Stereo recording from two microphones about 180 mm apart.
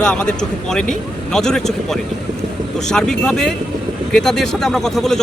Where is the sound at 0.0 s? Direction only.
5° left (ahead or behind).